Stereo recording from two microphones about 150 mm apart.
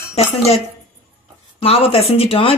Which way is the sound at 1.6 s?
40° left (ahead or behind).